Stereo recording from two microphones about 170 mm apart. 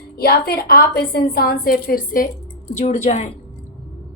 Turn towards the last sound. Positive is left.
turn(degrees=40)  # may be behind; listen again after turning